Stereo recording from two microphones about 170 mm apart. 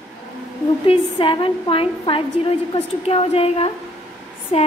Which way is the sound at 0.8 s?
30° left (ahead or behind).